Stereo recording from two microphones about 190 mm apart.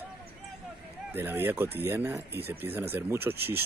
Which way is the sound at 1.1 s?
10° right (ahead or behind).